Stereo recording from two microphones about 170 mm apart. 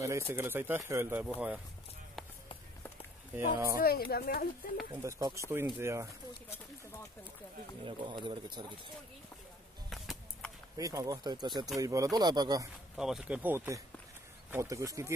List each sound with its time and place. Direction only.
0.0 s speech: 15° right (ahead or behind)
3.8 s speech: 60° left (ahead or behind)
5.0 s speech: 15° right (ahead or behind)
6.5 s speech: 15° left (ahead or behind)
7.8 s speech: 30° right (ahead or behind)
9.8 s a sound: centre (ahead or behind)
10.8 s speech: 20° right (ahead or behind)
12.9 s speech: centre (ahead or behind)